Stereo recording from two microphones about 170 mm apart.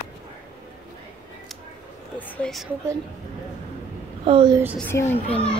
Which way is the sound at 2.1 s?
5° left (ahead or behind).